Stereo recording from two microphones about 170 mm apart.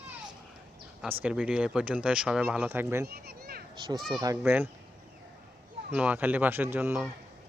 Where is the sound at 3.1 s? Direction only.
65° right (ahead or behind).